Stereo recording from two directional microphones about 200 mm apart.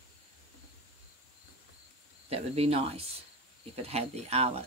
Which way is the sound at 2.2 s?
30° right (ahead or behind).